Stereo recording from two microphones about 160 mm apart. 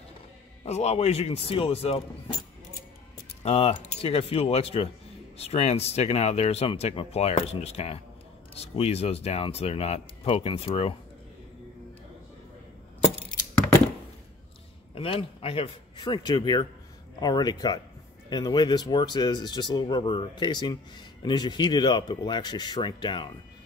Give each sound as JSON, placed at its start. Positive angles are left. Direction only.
{"t": 0.7, "sound": "speech", "side_deg": 40}
{"t": 3.4, "sound": "speech", "side_deg": 40}
{"t": 15.0, "sound": "speech", "side_deg": 35}